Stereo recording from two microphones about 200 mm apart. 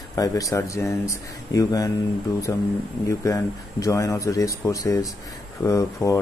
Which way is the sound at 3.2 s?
15° left (ahead or behind).